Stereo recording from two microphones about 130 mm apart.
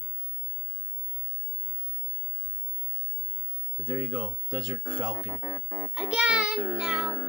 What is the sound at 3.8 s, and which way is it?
Speech, 30° right (ahead or behind).